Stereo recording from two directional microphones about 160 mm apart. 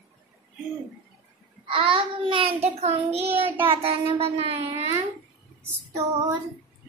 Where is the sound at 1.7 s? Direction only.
35° right (ahead or behind).